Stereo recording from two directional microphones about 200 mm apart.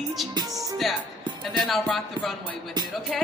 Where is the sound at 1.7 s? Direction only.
Centre (ahead or behind).